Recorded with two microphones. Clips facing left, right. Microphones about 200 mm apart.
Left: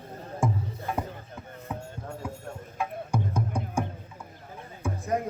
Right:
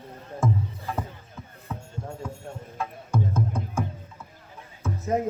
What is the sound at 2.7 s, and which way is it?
Music, 15° left (ahead or behind).